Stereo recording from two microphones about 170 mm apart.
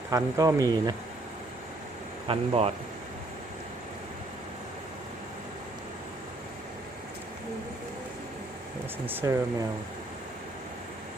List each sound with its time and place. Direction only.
0.1 s speech: 20° right (ahead or behind)
2.2 s a man's voice: 35° right (ahead or behind)
9.0 s speech: 20° right (ahead or behind)